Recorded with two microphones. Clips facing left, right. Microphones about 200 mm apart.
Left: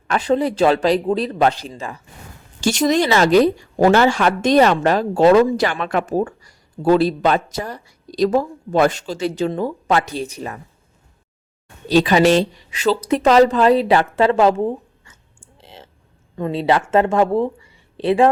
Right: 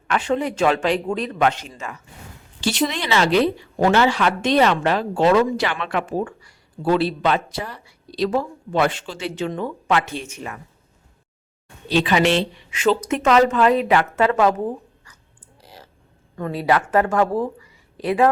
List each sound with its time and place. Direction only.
0.1 s speech: 35° left (ahead or behind)
2.6 s speech: 45° left (ahead or behind)
11.9 s speech: 40° left (ahead or behind)
15.6 s a sound: 25° left (ahead or behind)
16.3 s speech: 20° left (ahead or behind)